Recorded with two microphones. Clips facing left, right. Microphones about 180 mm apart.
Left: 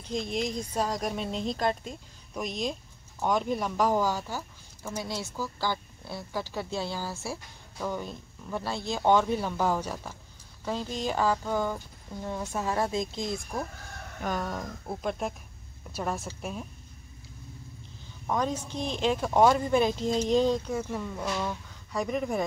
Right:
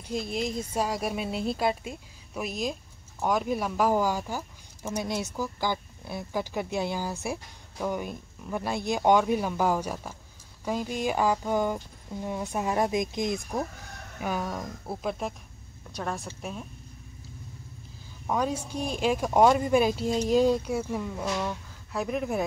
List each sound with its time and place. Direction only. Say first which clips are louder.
0.0 s speech: even; 5° right (ahead or behind)
14.2 s speech: right 1 dB; 5° right (ahead or behind)
18.2 s speech: right 1 dB; 10° right (ahead or behind)